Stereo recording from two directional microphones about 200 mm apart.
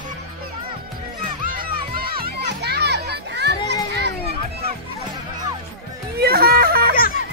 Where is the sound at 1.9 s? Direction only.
50° right (ahead or behind).